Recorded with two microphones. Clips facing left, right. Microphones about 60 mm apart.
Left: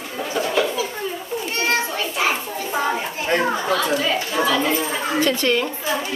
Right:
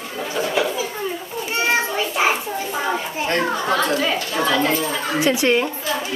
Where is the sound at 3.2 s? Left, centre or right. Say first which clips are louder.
Left 1 dB; centre.